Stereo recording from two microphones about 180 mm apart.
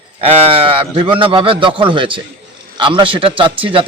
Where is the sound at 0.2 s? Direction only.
30° right (ahead or behind).